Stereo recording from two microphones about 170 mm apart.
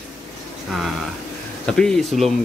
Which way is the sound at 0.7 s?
Centre (ahead or behind).